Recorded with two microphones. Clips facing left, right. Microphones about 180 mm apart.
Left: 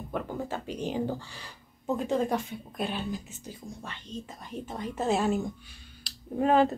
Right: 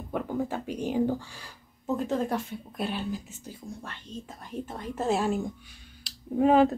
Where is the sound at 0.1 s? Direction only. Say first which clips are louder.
Right 3 dB; 10° right (ahead or behind).